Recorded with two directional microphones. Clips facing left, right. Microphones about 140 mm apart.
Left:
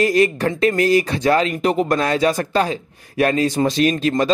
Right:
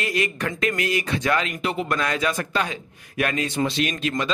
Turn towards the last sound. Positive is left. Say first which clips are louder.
# left 7 dB
turn(degrees=30)  # may be behind; listen again after turning